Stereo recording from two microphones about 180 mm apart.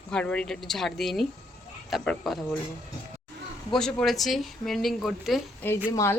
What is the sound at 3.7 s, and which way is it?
Speech, 5° left (ahead or behind).